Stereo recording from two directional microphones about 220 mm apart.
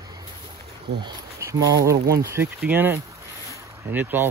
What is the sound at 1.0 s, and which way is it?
Speech, 15° right (ahead or behind).